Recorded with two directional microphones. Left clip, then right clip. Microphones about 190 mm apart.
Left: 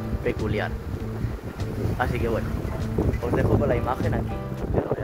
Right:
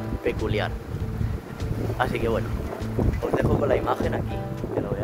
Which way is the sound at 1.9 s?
15° right (ahead or behind).